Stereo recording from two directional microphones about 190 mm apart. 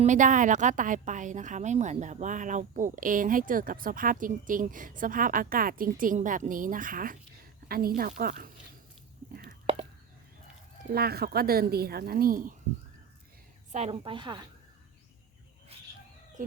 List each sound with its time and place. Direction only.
0.0 s a woman's voice: 40° right (ahead or behind)
10.9 s a woman's voice: 55° right (ahead or behind)
13.7 s a woman's voice: 30° right (ahead or behind)
15.7 s chicken: 30° right (ahead or behind)